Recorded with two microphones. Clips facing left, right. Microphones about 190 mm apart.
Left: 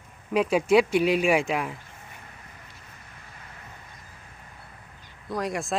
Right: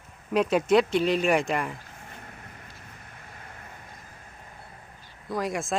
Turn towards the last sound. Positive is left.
turn(degrees=0)  # may be behind; listen again after turning